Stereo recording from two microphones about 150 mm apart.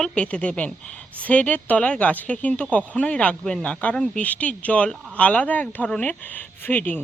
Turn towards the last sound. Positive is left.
turn(degrees=10)  # may be behind; listen again after turning